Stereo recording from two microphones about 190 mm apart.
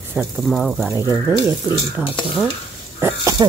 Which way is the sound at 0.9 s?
15° right (ahead or behind).